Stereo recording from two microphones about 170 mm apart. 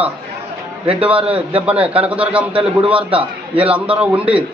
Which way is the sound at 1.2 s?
10° right (ahead or behind).